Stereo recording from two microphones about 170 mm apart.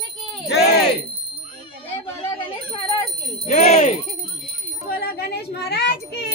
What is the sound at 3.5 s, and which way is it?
Bicycle bell, 40° left (ahead or behind).